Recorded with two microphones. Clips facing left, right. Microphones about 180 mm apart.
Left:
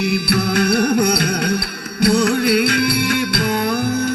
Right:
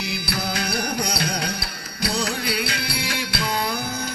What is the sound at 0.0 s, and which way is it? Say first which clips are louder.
Music: left 10 dB; 60° left (ahead or behind).